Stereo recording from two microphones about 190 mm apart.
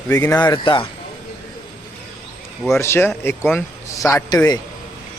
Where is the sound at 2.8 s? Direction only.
15° left (ahead or behind).